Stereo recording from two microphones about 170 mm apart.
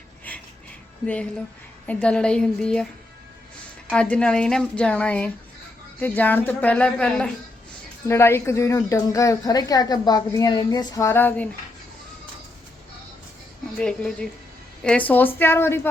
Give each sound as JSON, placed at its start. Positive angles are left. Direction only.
{"t": 0.3, "sound": "a sound", "side_deg": 10}
{"t": 1.0, "sound": "a woman's voice", "side_deg": 5}
{"t": 3.9, "sound": "a woman's voice", "side_deg": 5}
{"t": 13.7, "sound": "a woman's voice", "side_deg": 5}